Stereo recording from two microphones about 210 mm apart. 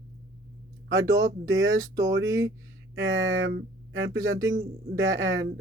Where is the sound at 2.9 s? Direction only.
65° right (ahead or behind).